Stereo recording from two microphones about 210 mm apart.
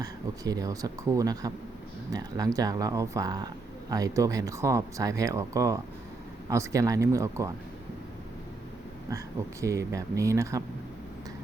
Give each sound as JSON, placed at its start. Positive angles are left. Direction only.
{"t": 0.0, "sound": "speech", "side_deg": -15}
{"t": 9.0, "sound": "speech", "side_deg": -15}